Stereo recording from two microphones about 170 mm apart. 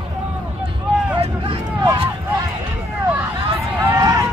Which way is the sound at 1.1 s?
30° right (ahead or behind).